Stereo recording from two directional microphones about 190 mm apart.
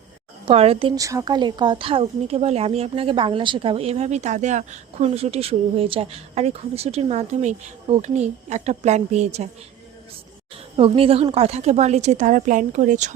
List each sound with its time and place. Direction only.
0.4 s a woman's voice: 30° right (ahead or behind)
10.8 s a woman's voice: 30° right (ahead or behind)